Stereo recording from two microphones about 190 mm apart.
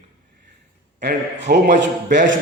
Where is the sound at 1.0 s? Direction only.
60° right (ahead or behind).